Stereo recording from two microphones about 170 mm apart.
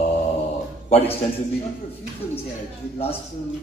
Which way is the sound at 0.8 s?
35° left (ahead or behind).